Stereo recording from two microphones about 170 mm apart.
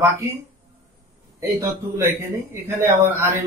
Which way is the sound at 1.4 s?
15° right (ahead or behind).